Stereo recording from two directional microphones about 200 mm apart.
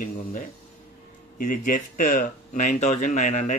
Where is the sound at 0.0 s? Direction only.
40° left (ahead or behind).